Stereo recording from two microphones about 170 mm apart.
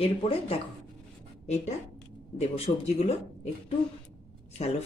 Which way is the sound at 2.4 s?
35° left (ahead or behind).